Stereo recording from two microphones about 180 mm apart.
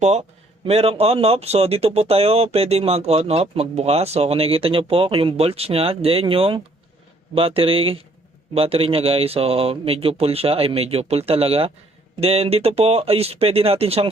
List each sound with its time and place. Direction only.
0.0 s speech: 40° right (ahead or behind)